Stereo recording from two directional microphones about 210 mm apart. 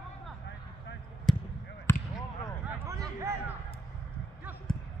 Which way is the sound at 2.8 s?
15° right (ahead or behind).